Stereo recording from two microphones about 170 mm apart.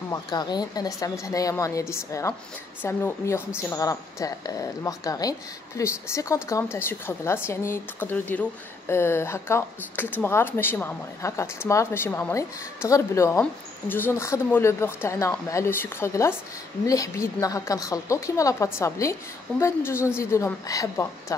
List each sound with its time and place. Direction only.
0.1 s a woman's voice: 25° left (ahead or behind)